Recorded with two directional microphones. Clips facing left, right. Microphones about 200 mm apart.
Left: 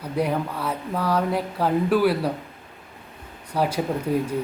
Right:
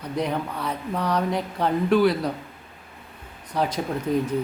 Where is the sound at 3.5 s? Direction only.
10° left (ahead or behind).